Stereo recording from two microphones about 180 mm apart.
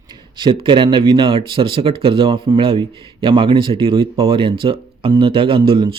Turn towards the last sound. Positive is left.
turn(degrees=-25)  # may be behind; listen again after turning